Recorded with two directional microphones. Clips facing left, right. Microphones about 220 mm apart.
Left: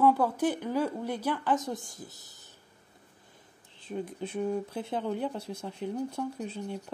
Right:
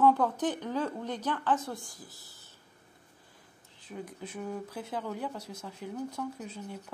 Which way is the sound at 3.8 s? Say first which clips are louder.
Left 6 dB; 25° left (ahead or behind).